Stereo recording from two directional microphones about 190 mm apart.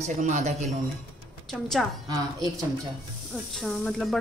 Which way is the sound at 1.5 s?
Centre (ahead or behind).